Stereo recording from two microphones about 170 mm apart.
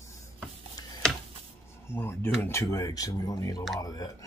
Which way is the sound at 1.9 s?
15° left (ahead or behind).